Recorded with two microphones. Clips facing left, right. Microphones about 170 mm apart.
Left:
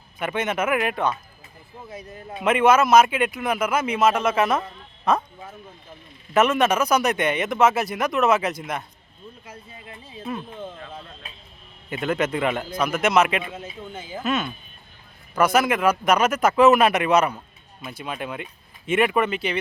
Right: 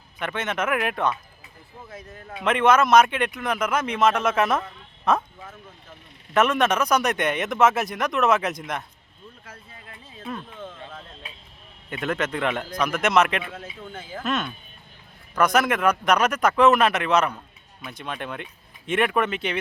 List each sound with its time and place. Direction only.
0.2 s speech: 10° left (ahead or behind)
2.0 s a man's voice: 25° left (ahead or behind)
2.4 s a man's voice: 5° left (ahead or behind)
6.3 s a man's voice: 5° left (ahead or behind)
9.7 s a sound: 20° left (ahead or behind)
10.2 s a sound: 10° left (ahead or behind)
11.9 s a man's voice: 5° left (ahead or behind)